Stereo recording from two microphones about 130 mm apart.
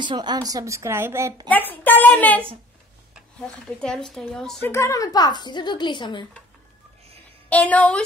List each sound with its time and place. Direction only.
0.0 s speech: 35° right (ahead or behind); by 1.3 s 20° right (ahead or behind)
1.5 s a woman's voice: 15° left (ahead or behind)
3.4 s speech: 5° left (ahead or behind)
4.6 s a woman's voice: 25° left (ahead or behind)
7.4 s a woman's voice: 10° left (ahead or behind)